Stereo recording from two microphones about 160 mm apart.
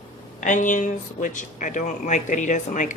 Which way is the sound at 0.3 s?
50° left (ahead or behind).